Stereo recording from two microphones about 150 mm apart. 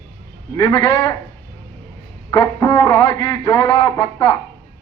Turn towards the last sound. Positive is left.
turn(degrees=30)  # may be behind; listen again after turning